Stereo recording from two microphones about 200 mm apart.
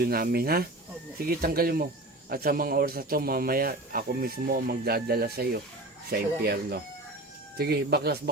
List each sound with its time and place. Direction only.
0.0 s speech: 50° right (ahead or behind)